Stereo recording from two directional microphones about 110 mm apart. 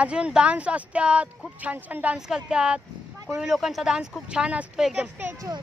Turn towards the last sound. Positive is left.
turn(degrees=-10)  # may be behind; listen again after turning